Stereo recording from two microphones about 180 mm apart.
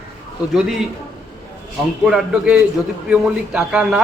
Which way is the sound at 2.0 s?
5° right (ahead or behind).